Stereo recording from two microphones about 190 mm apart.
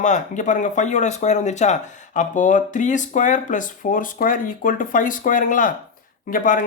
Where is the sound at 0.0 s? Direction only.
40° left (ahead or behind).